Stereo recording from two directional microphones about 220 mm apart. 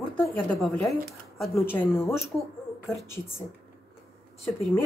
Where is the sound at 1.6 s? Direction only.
10° left (ahead or behind).